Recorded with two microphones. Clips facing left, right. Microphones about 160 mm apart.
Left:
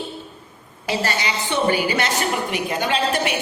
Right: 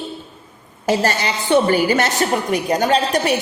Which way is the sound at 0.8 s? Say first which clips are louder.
Right 5 dB; 45° right (ahead or behind).